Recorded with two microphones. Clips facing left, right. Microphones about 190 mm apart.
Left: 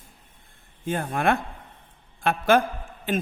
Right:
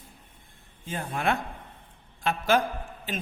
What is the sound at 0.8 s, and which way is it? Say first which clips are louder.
A man's voice: left 5 dB; 55° left (ahead or behind).